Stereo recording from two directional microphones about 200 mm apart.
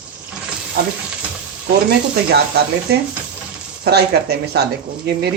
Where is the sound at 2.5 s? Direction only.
55° right (ahead or behind).